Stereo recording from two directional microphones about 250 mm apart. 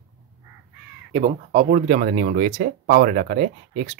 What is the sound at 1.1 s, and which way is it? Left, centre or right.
Speech, right.